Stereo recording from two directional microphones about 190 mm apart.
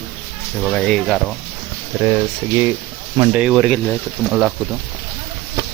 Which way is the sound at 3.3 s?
5° right (ahead or behind).